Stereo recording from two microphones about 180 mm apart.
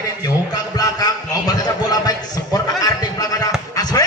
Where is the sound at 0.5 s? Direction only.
20° left (ahead or behind).